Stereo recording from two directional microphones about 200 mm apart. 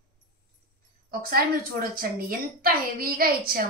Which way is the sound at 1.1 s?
45° right (ahead or behind).